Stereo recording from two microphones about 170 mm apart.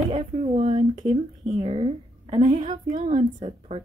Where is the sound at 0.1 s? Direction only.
35° right (ahead or behind).